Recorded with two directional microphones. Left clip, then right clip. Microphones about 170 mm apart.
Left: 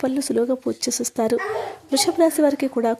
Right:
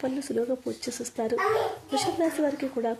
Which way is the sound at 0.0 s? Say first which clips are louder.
Left 7 dB; 40° left (ahead or behind).